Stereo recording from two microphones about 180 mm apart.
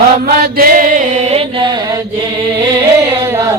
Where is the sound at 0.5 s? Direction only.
55° right (ahead or behind).